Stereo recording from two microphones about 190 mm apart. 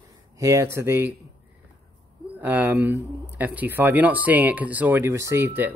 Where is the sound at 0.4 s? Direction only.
15° right (ahead or behind).